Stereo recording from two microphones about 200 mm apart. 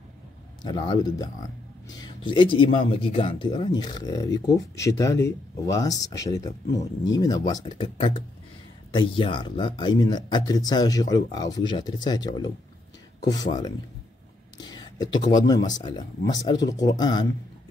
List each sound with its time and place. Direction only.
0.6 s speech: 20° left (ahead or behind)